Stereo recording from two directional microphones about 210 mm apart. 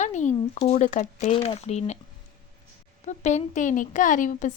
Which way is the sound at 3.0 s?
35° left (ahead or behind).